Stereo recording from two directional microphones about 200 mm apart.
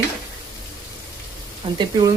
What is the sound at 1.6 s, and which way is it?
Speech, 30° right (ahead or behind).